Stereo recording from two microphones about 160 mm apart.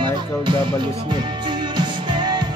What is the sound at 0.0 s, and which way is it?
Music, 30° right (ahead or behind).